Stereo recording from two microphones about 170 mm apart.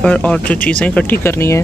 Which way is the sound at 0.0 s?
5° left (ahead or behind).